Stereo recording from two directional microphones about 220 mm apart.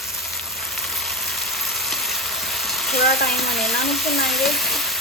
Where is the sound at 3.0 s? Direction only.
45° left (ahead or behind).